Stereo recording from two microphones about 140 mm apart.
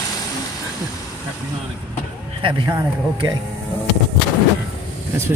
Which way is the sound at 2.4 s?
35° right (ahead or behind).